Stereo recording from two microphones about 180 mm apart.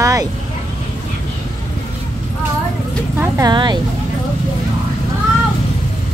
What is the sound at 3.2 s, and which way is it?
Speech, 20° right (ahead or behind).